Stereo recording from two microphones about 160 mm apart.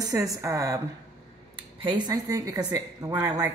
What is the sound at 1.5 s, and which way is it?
A woman's voice, 30° right (ahead or behind).